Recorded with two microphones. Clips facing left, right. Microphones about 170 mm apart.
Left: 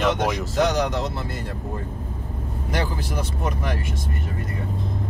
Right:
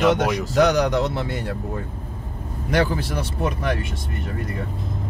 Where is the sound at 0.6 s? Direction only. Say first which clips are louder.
Right 4 dB; 65° right (ahead or behind).